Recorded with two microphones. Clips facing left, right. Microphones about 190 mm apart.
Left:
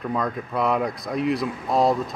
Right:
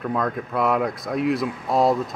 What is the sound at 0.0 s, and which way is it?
A man's voice, centre (ahead or behind).